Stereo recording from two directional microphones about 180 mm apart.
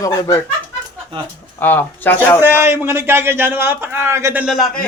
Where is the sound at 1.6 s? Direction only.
10° left (ahead or behind).